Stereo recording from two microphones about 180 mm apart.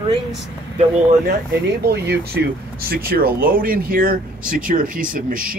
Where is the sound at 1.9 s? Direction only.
65° right (ahead or behind).